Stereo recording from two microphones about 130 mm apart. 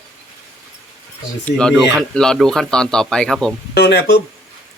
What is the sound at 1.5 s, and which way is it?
A man's voice, 5° left (ahead or behind).